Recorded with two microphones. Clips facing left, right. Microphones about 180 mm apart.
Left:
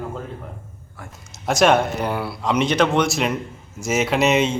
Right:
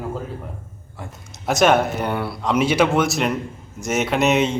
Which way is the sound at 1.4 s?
Centre (ahead or behind).